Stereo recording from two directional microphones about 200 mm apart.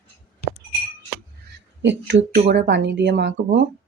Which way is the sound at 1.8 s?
60° right (ahead or behind).